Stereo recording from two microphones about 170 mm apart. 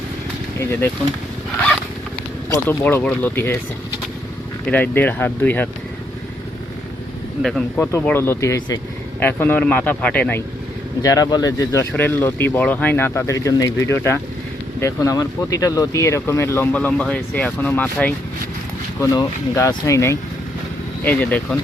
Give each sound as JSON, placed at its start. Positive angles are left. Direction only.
{"t": 0.6, "sound": "speech", "side_deg": 15}
{"t": 2.5, "sound": "speech", "side_deg": 10}
{"t": 4.7, "sound": "speech", "side_deg": 10}
{"t": 7.4, "sound": "speech", "side_deg": 0}
{"t": 7.9, "sound": "speech", "side_deg": 15}